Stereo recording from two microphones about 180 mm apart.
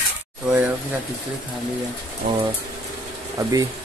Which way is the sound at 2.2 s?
40° right (ahead or behind).